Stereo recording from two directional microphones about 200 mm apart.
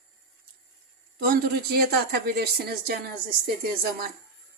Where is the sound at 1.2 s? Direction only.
50° right (ahead or behind).